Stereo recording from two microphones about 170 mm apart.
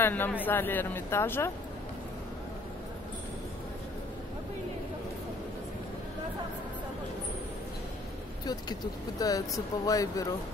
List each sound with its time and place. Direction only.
0.0 s speech: 10° left (ahead or behind)
9.2 s speech: 20° left (ahead or behind)